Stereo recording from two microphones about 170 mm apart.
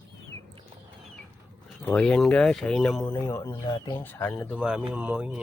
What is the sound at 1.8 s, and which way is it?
Speech, 10° left (ahead or behind).